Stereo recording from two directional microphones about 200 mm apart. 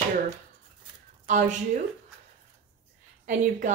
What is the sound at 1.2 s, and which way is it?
Speech, 40° right (ahead or behind).